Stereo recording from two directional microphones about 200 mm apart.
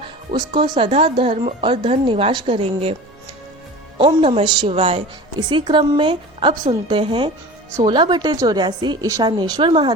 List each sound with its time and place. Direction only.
0.3 s a woman's voice: 25° right (ahead or behind)
3.9 s a woman's voice: 25° right (ahead or behind)